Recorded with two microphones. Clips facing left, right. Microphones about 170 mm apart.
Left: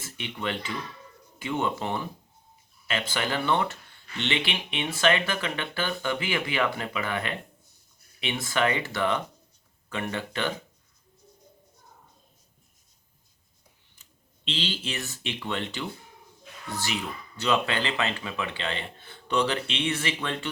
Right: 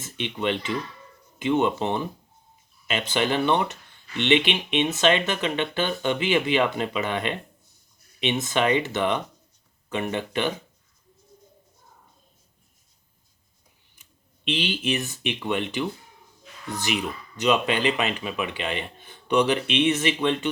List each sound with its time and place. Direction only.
0.0 s speech: 20° right (ahead or behind)
14.0 s speech: 15° right (ahead or behind)